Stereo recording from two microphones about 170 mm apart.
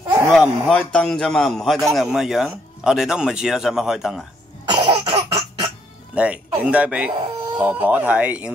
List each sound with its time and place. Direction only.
0.3 s a man's voice: centre (ahead or behind)
4.6 s cough: 25° right (ahead or behind)
6.1 s speech: 5° right (ahead or behind)